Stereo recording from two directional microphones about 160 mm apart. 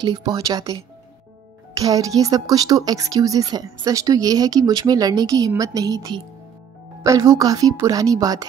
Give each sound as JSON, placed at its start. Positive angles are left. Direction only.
{"t": 0.0, "sound": "speech", "side_deg": -25}
{"t": 1.8, "sound": "speech", "side_deg": -20}